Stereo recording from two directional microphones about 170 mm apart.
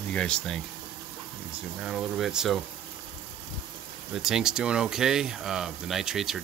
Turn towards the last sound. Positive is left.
turn(degrees=0)  # may be behind; listen again after turning